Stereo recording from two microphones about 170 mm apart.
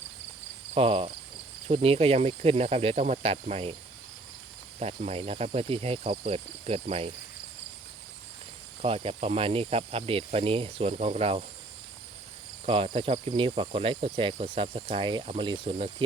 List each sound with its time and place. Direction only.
0.7 s cricket: 35° right (ahead or behind)
4.8 s cricket: 40° right (ahead or behind)
8.8 s cricket: 35° right (ahead or behind)
12.6 s cricket: 30° right (ahead or behind)